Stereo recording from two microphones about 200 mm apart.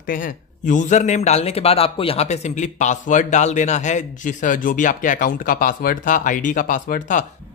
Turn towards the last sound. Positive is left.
turn(degrees=40)  # may be behind; listen again after turning